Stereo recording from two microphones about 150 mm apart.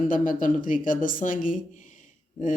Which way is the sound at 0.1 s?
65° left (ahead or behind).